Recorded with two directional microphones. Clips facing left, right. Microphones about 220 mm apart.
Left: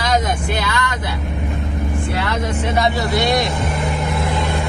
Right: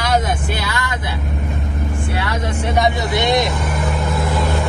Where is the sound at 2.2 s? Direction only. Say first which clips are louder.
Left 1 dB; 10° right (ahead or behind).